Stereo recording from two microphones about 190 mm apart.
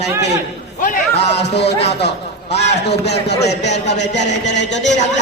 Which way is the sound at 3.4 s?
35° left (ahead or behind).